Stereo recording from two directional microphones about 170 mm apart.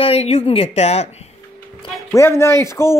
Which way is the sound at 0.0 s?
35° left (ahead or behind).